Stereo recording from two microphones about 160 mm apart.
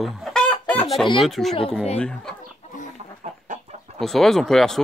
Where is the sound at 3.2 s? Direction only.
50° right (ahead or behind).